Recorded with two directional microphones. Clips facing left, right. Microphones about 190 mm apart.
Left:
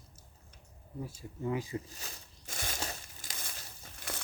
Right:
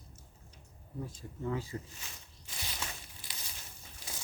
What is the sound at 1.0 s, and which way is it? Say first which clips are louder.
Speech: left 2 dB; 10° left (ahead or behind).